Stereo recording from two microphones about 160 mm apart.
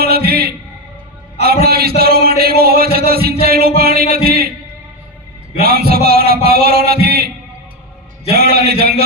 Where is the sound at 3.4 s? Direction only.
75° right (ahead or behind).